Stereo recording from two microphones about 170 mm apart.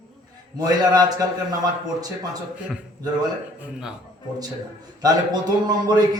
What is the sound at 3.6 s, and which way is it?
Speech, 5° right (ahead or behind).